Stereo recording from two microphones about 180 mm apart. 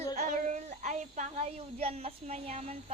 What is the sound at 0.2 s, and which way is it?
Child singing, 45° right (ahead or behind).